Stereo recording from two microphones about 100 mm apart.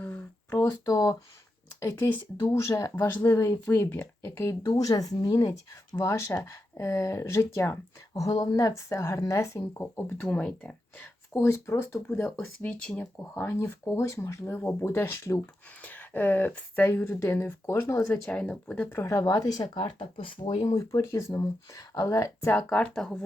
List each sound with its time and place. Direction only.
0.0 s a sound: 20° left (ahead or behind)
0.9 s speech: 35° left (ahead or behind)
1.8 s speech: 25° left (ahead or behind)
2.6 s speech: 35° left (ahead or behind)
4.8 s speech: 35° left (ahead or behind)
8.1 s speech: 35° left (ahead or behind); by 11.1 s 15° left (ahead or behind)
11.3 s speech: 30° left (ahead or behind); by 13.1 s 10° left (ahead or behind)
13.3 s speech: 25° left (ahead or behind)
15.8 s speech: 20° left (ahead or behind)
18.3 s speech: 10° left (ahead or behind)
18.9 s speech: 30° left (ahead or behind)
19.8 s speech: 65° left (ahead or behind)
20.7 s speech: 35° left (ahead or behind)
22.5 s speech: 10° left (ahead or behind)